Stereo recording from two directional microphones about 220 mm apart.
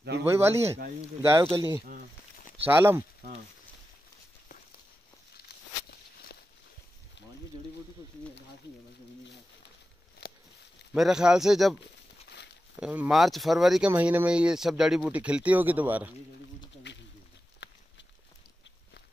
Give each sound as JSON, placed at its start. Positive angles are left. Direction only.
{"t": 0.2, "sound": "speech", "side_deg": -10}
{"t": 1.4, "sound": "speech", "side_deg": -20}
{"t": 2.6, "sound": "speech", "side_deg": -10}
{"t": 10.2, "sound": "a sound", "side_deg": 45}
{"t": 10.9, "sound": "speech", "side_deg": 0}
{"t": 12.8, "sound": "speech", "side_deg": -5}
{"t": 16.9, "sound": "a sound", "side_deg": 50}
{"t": 17.6, "sound": "walk", "side_deg": 50}